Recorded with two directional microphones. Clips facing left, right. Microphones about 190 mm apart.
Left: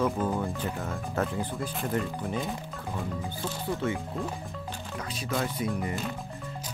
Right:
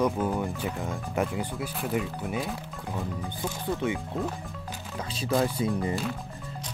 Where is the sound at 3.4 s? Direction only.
15° right (ahead or behind).